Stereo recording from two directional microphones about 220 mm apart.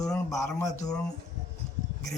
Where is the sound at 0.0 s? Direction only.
15° left (ahead or behind).